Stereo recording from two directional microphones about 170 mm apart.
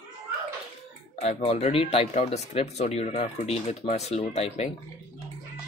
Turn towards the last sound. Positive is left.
turn(degrees=40)  # may be behind; listen again after turning